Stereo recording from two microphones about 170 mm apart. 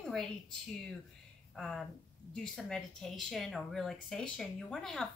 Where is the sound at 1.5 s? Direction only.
Centre (ahead or behind).